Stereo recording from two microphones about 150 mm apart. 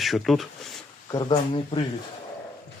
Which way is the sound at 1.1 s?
30° left (ahead or behind).